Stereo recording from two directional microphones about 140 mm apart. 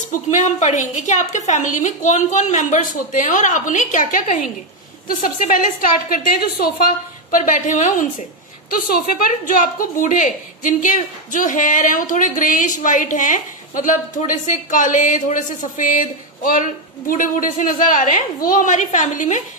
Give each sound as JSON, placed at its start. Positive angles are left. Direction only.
{"t": 0.1, "sound": "a woman's voice", "side_deg": 60}
{"t": 7.2, "sound": "a woman's voice", "side_deg": 70}
{"t": 8.6, "sound": "a woman's voice", "side_deg": 90}